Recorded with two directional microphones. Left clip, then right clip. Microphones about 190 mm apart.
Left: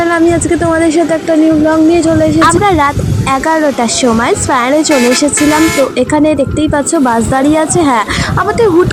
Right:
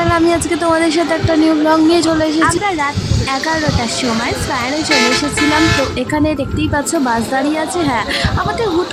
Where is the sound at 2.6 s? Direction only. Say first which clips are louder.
Left 7 dB; 20° left (ahead or behind).